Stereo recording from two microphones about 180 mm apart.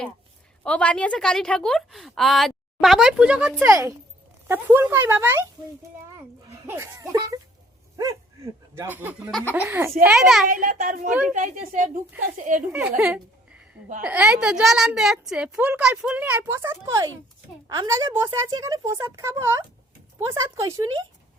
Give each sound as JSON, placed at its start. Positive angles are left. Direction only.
{"t": 0.6, "sound": "a woman's voice", "side_deg": 5}
{"t": 3.6, "sound": "a woman's voice", "side_deg": -15}
{"t": 6.7, "sound": "a woman's voice", "side_deg": -15}
{"t": 8.7, "sound": "a woman's voice", "side_deg": -10}
{"t": 10.5, "sound": "a child's voice", "side_deg": -50}
{"t": 11.1, "sound": "a woman's voice", "side_deg": -5}
{"t": 11.7, "sound": "a child's voice", "side_deg": -45}
{"t": 13.0, "sound": "a sound", "side_deg": -5}
{"t": 14.0, "sound": "a woman's voice", "side_deg": -5}